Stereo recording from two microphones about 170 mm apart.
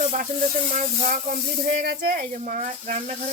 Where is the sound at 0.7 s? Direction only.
45° right (ahead or behind).